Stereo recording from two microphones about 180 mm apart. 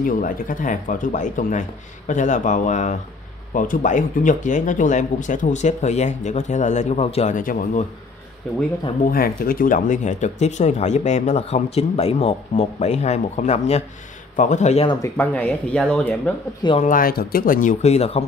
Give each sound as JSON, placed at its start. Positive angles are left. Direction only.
{"t": 0.0, "sound": "speech", "side_deg": 50}
{"t": 9.0, "sound": "speech", "side_deg": 55}
{"t": 15.0, "sound": "speech", "side_deg": 10}
{"t": 16.8, "sound": "speech", "side_deg": 50}